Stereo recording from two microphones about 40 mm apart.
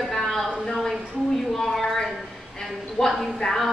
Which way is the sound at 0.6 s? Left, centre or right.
Centre.